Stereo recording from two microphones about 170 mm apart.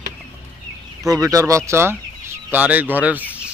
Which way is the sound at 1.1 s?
20° right (ahead or behind).